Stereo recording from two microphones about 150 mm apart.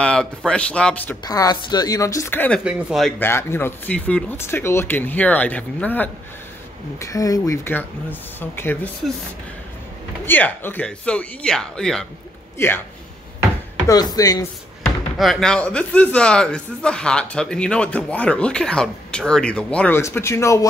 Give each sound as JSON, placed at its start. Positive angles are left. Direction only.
{"t": 0.0, "sound": "speech", "side_deg": 5}
{"t": 1.2, "sound": "speech", "side_deg": 25}
{"t": 2.6, "sound": "speech", "side_deg": -5}
{"t": 3.2, "sound": "speech", "side_deg": 15}
{"t": 7.0, "sound": "speech", "side_deg": 20}
{"t": 10.2, "sound": "speech", "side_deg": 15}
{"t": 12.5, "sound": "a man's voice", "side_deg": 15}
{"t": 13.8, "sound": "speech", "side_deg": 25}
{"t": 15.1, "sound": "speech", "side_deg": 0}
{"t": 20.0, "sound": "speech", "side_deg": 20}